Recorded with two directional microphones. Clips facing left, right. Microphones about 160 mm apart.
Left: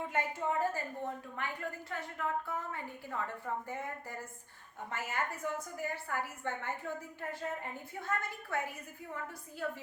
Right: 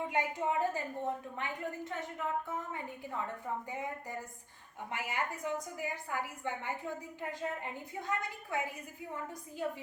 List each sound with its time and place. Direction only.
0.1 s a woman's voice: 15° right (ahead or behind)
4.9 s a woman's voice: 15° right (ahead or behind)